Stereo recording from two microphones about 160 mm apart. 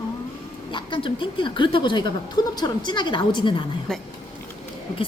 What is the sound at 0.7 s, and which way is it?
A woman's voice, 30° left (ahead or behind).